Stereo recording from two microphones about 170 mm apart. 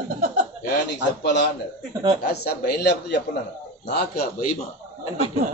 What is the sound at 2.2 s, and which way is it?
Speech, 70° left (ahead or behind).